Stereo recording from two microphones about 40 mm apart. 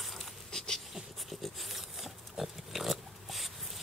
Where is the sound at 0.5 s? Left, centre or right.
Centre.